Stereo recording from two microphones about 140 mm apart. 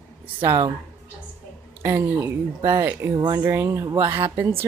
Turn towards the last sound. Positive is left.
turn(degrees=-15)  # may be behind; listen again after turning